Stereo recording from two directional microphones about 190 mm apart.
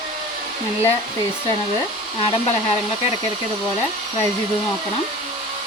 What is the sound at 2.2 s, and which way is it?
Speech, 35° left (ahead or behind).